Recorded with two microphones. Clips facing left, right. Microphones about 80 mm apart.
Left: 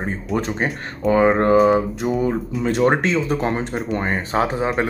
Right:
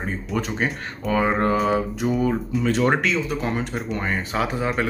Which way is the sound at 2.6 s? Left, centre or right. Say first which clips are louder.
Left 3 dB; left.